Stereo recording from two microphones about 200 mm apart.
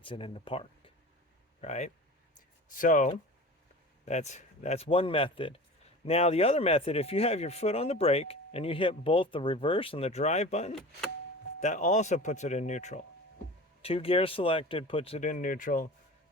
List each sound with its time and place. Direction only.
0.0 s speech: 25° left (ahead or behind); by 15.9 s 40° left (ahead or behind)